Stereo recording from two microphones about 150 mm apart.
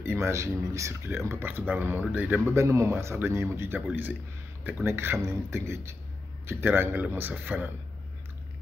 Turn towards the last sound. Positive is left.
turn(degrees=-10)  # may be behind; listen again after turning